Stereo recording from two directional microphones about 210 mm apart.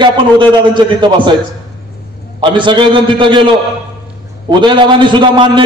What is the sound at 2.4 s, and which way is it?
A man's voice, 20° right (ahead or behind).